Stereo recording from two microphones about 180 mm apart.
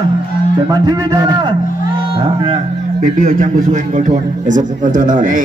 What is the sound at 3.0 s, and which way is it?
A man's voice, 45° right (ahead or behind).